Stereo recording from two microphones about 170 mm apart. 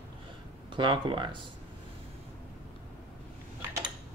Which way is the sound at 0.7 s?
30° right (ahead or behind).